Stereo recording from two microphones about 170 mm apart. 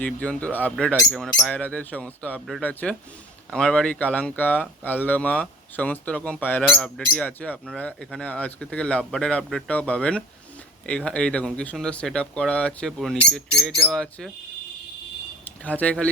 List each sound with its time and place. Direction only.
0.0 s speech: 10° left (ahead or behind)
15.6 s speech: 10° left (ahead or behind)